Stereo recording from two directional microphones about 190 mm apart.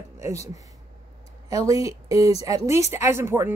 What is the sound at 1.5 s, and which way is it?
Speech, 15° right (ahead or behind).